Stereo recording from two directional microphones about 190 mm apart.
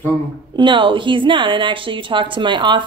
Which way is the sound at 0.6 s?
25° right (ahead or behind).